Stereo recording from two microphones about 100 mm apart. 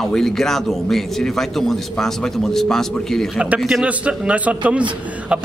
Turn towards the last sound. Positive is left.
turn(degrees=-10)  # may be behind; listen again after turning